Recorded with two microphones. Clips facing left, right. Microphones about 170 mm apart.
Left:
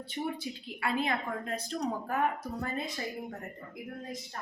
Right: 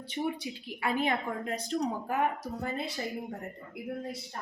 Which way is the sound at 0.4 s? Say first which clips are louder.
Right 1 dB; 15° right (ahead or behind).